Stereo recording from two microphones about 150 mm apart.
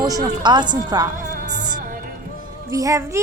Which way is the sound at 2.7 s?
20° right (ahead or behind).